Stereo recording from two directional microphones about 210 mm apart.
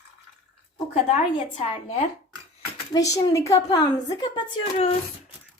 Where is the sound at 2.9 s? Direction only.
15° left (ahead or behind).